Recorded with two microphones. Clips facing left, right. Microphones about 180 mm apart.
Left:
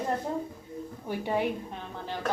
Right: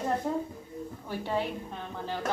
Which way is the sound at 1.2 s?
15° left (ahead or behind).